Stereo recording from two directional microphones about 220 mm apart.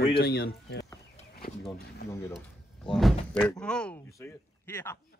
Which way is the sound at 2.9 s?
Centre (ahead or behind).